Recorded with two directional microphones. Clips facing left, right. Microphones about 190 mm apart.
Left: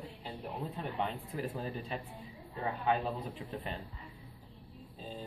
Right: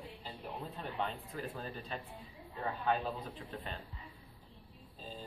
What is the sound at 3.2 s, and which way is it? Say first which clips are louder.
Speech: left 4 dB; 15° left (ahead or behind).